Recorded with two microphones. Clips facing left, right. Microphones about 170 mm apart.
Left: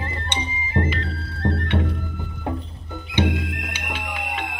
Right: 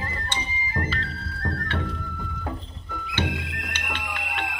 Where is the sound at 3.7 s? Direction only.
5° left (ahead or behind).